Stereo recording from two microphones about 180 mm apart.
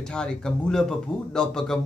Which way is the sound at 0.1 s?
5° left (ahead or behind).